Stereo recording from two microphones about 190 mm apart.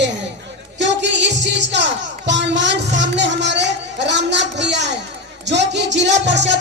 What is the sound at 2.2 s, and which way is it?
Speech, 70° right (ahead or behind).